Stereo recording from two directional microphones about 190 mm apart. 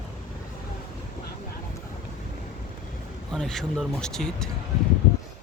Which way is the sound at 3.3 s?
Centre (ahead or behind).